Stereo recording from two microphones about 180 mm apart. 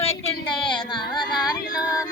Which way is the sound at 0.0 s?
35° left (ahead or behind).